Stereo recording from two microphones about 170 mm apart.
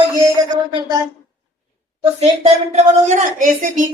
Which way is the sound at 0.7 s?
25° right (ahead or behind).